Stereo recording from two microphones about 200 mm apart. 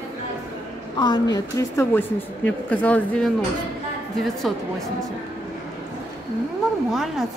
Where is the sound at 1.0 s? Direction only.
20° left (ahead or behind).